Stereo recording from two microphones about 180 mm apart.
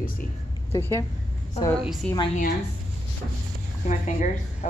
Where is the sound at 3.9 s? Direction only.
45° left (ahead or behind).